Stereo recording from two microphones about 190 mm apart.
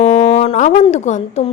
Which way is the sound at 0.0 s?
40° left (ahead or behind).